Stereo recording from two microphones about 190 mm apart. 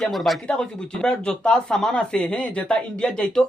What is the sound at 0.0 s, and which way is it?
Speech, centre (ahead or behind).